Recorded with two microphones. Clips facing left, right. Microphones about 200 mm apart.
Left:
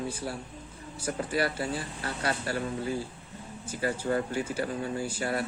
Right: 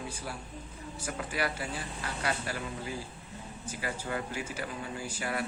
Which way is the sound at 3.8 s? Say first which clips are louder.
Left 7 dB; 35° left (ahead or behind).